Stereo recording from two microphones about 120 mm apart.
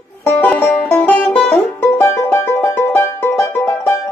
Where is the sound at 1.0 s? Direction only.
10° left (ahead or behind).